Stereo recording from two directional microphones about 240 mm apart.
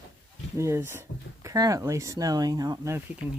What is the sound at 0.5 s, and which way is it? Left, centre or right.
Speech, centre.